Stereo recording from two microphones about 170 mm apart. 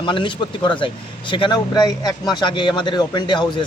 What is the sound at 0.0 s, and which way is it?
Speech, 30° left (ahead or behind).